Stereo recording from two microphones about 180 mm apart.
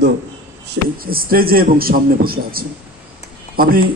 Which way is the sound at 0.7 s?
55° right (ahead or behind).